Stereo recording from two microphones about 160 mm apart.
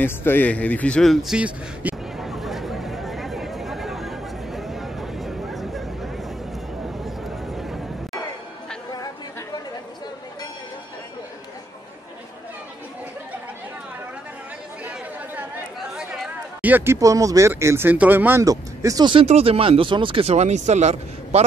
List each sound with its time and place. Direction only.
0.0 s a sound: 10° left (ahead or behind)
16.0 s speech: 5° right (ahead or behind); by 19.2 s 25° right (ahead or behind)
19.2 s speech: 40° right (ahead or behind)